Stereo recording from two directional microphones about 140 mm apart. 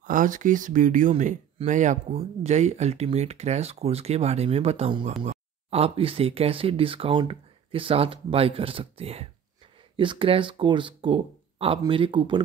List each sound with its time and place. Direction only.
0.0 s speech: 70° right (ahead or behind); by 12.4 s 35° right (ahead or behind)